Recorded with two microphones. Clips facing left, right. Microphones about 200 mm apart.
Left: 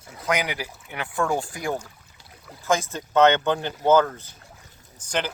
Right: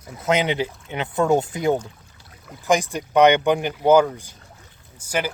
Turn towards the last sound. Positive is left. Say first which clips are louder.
# right 2 dB
turn(degrees=-10)  # may be behind; listen again after turning